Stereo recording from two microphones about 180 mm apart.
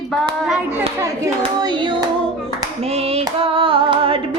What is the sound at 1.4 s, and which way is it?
Child singing, 25° right (ahead or behind).